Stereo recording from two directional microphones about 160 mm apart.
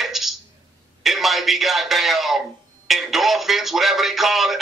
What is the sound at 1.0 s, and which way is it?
Speech, centre (ahead or behind).